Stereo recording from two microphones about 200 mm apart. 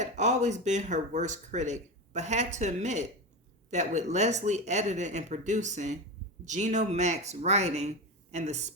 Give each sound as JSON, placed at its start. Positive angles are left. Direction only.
{"t": 0.0, "sound": "speech", "side_deg": -35}